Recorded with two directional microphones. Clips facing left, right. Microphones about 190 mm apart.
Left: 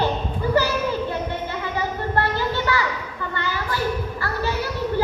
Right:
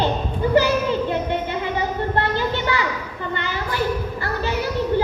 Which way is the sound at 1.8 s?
20° right (ahead or behind).